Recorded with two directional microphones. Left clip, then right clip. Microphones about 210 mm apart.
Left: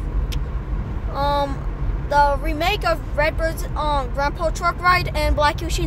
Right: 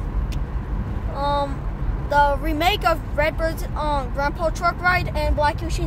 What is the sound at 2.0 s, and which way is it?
Speech, centre (ahead or behind).